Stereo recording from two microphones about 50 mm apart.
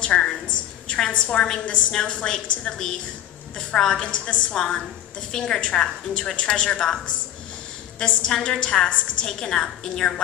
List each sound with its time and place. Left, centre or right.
0.0 s a woman's voice: centre
8.0 s a woman's voice: left